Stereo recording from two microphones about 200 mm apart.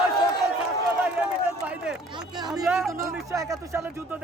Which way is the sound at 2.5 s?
5° right (ahead or behind).